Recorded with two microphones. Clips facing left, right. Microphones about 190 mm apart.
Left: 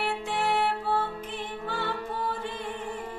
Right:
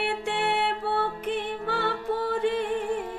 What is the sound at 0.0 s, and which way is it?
Music, 65° right (ahead or behind).